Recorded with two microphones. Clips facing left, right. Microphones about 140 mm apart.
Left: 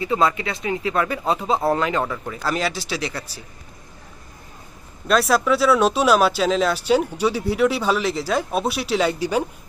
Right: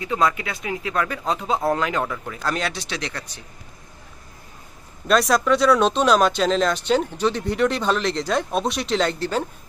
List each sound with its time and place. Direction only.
0.0 s speech: centre (ahead or behind)
5.0 s speech: centre (ahead or behind)